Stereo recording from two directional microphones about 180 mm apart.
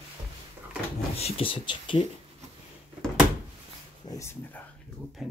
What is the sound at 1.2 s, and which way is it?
Speech, 30° left (ahead or behind).